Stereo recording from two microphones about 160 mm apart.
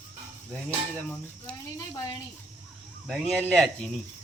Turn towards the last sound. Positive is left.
turn(degrees=5)  # may be behind; listen again after turning